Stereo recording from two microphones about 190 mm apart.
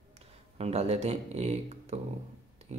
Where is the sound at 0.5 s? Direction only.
35° right (ahead or behind).